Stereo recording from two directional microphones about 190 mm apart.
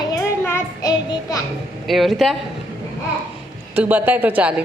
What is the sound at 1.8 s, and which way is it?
Speech, centre (ahead or behind).